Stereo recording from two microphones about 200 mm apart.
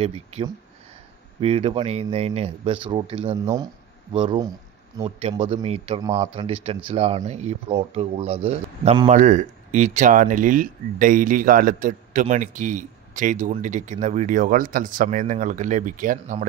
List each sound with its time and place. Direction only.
0.0 s a man's voice: 30° right (ahead or behind)
9.1 s speech: 35° right (ahead or behind)